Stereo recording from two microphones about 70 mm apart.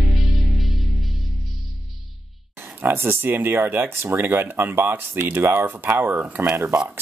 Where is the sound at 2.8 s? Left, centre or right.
Right.